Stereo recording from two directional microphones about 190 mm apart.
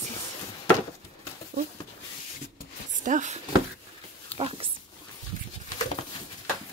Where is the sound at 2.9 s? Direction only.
40° right (ahead or behind).